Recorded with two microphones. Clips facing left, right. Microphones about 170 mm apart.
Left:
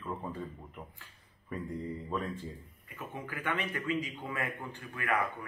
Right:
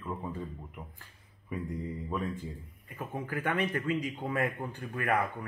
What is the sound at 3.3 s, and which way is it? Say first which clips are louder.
A man's voice: right 5 dB; 45° right (ahead or behind).